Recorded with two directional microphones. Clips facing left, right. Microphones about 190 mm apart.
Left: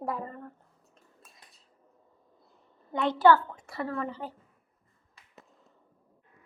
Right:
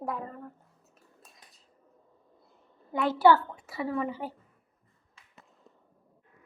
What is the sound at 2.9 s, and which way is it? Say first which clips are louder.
A woman's voice: even; 5° right (ahead or behind).